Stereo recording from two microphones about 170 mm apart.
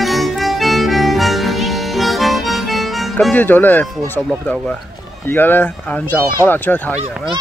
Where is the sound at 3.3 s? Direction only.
10° left (ahead or behind).